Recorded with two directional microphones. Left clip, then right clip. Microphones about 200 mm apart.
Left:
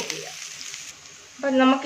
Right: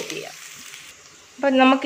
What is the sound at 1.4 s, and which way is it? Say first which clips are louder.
Speech: right 3 dB; 50° right (ahead or behind).